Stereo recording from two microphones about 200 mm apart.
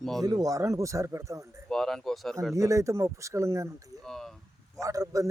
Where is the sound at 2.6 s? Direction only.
15° right (ahead or behind).